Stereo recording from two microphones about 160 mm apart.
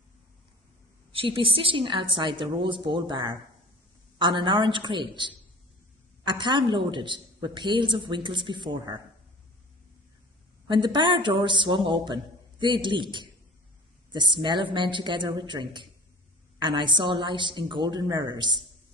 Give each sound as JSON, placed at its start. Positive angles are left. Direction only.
{"t": 1.1, "sound": "a woman's voice", "side_deg": -35}
{"t": 10.7, "sound": "speech", "side_deg": -30}
{"t": 16.6, "sound": "speech", "side_deg": -30}